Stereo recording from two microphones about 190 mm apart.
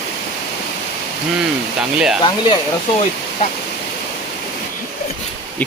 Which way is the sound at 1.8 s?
Centre (ahead or behind).